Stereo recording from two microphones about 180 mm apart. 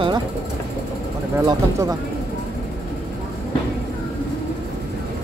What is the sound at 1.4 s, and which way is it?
Speech, 15° right (ahead or behind).